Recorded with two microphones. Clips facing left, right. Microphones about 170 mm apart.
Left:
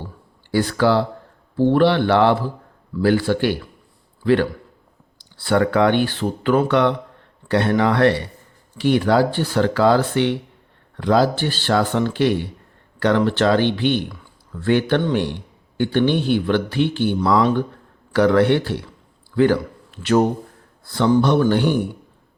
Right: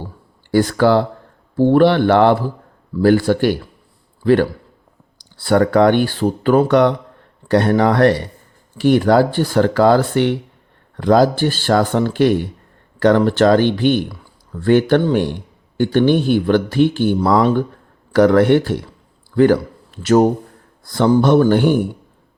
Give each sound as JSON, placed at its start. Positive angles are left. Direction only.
{"t": 0.5, "sound": "a man's voice", "side_deg": -45}